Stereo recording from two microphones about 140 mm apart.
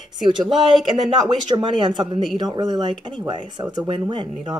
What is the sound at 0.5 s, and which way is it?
Speech, centre (ahead or behind).